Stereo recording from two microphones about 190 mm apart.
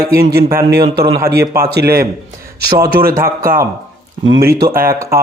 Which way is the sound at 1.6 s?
55° right (ahead or behind).